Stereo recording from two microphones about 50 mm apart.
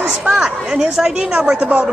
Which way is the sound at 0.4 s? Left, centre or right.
Centre.